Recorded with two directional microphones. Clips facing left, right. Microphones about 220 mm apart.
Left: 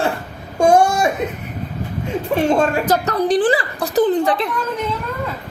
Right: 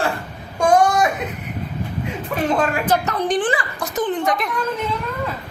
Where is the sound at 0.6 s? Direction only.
25° left (ahead or behind).